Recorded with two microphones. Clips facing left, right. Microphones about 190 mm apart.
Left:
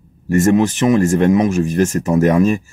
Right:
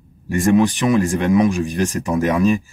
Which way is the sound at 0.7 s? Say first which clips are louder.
Left 4 dB; 40° left (ahead or behind).